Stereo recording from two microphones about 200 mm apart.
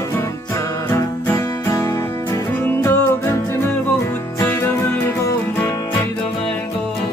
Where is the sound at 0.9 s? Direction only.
15° left (ahead or behind).